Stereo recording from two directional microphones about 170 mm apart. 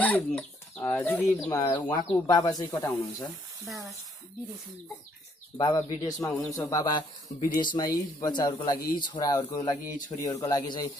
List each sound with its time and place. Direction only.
0.0 s speech: 10° left (ahead or behind)
3.6 s speech: centre (ahead or behind)
5.6 s speech: 25° left (ahead or behind)
6.2 s speech: centre (ahead or behind)
6.5 s speech: 20° left (ahead or behind)